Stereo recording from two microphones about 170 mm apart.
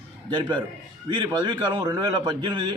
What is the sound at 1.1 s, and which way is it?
A man's voice, 25° right (ahead or behind).